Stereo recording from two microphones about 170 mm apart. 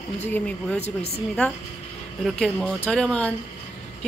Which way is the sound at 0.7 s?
40° left (ahead or behind).